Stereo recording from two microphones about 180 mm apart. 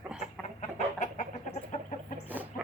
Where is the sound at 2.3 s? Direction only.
10° right (ahead or behind).